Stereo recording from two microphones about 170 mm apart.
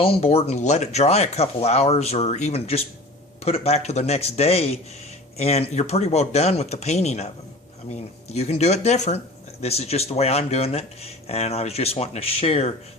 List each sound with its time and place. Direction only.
0.0 s speech: 35° left (ahead or behind)